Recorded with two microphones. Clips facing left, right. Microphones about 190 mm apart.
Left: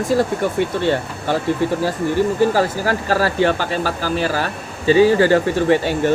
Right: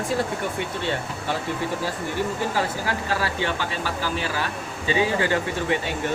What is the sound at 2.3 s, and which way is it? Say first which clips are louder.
Speech: left 9 dB; 40° left (ahead or behind).